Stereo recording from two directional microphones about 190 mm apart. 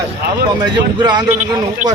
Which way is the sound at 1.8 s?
40° right (ahead or behind).